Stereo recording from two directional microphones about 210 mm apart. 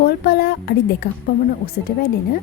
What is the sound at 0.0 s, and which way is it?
A woman's voice, 50° left (ahead or behind).